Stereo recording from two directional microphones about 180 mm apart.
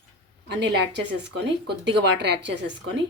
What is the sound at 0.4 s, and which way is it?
Speech, 70° right (ahead or behind).